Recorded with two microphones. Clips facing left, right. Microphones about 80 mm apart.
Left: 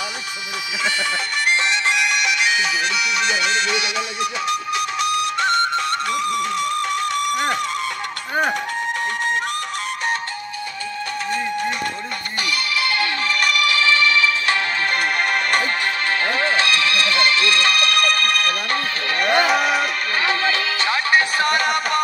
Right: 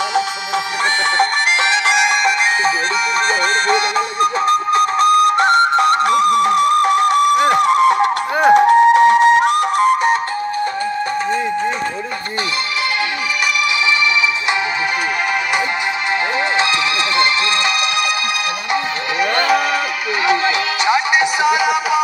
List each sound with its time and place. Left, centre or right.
1.1 s music: right
3.6 s music: right
16.5 s music: right
19.2 s music: centre
20.2 s music: centre